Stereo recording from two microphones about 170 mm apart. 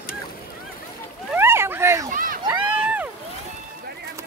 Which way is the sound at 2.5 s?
10° right (ahead or behind).